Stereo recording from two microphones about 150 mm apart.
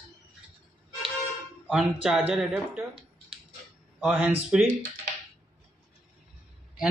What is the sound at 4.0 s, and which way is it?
Speech, 10° right (ahead or behind).